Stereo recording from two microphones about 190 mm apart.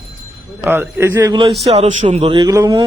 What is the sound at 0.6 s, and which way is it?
Speech, 10° right (ahead or behind).